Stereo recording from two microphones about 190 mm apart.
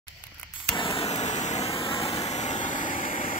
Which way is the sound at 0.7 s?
30° left (ahead or behind).